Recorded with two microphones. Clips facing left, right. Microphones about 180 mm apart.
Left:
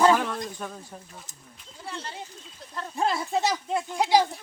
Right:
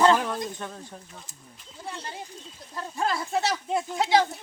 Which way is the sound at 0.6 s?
5° left (ahead or behind).